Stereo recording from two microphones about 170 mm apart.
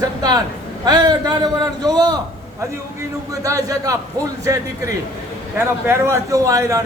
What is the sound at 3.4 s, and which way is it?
Speech, 20° right (ahead or behind).